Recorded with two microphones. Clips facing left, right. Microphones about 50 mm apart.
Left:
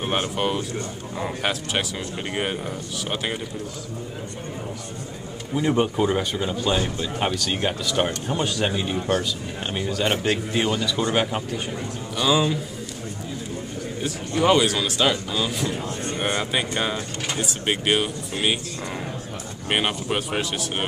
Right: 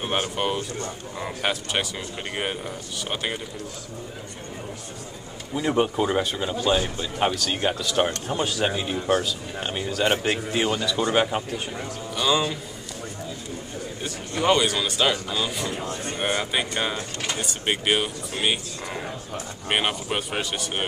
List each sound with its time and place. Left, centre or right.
0.0 s speech: centre
5.5 s speech: centre
14.0 s speech: centre